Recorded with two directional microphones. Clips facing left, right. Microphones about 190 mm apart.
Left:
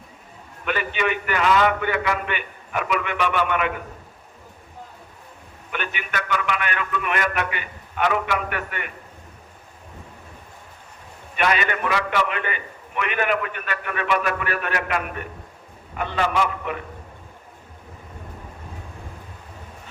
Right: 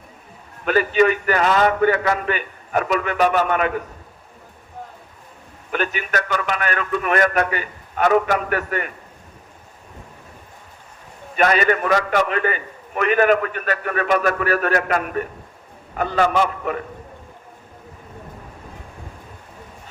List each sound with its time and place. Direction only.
0.6 s a man's voice: 40° right (ahead or behind)
5.7 s a man's voice: 40° right (ahead or behind)
11.3 s a man's voice: 40° right (ahead or behind)